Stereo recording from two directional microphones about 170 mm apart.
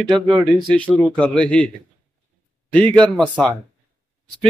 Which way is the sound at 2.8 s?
5° left (ahead or behind).